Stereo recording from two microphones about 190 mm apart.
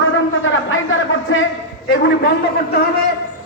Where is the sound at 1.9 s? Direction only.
60° left (ahead or behind).